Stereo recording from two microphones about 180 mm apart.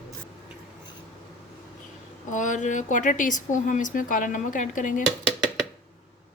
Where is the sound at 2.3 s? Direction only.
45° left (ahead or behind).